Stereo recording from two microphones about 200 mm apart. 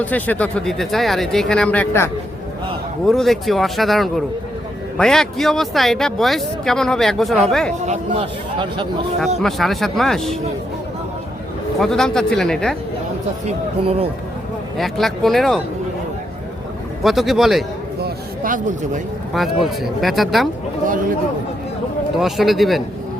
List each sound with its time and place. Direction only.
0.0 s speech: 10° left (ahead or behind)
3.1 s speech: centre (ahead or behind)
7.9 s a man's voice: 30° right (ahead or behind)
9.4 s speech: centre (ahead or behind)
11.8 s speech: centre (ahead or behind)
13.8 s speech: 30° right (ahead or behind)
14.8 s speech: centre (ahead or behind)
17.0 s speech: centre (ahead or behind)
18.0 s a sound: 40° right (ahead or behind)
19.8 s speech: centre (ahead or behind)
22.1 s speech: centre (ahead or behind)